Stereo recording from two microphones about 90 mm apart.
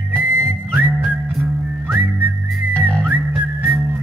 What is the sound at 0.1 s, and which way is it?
Whistling, 20° right (ahead or behind).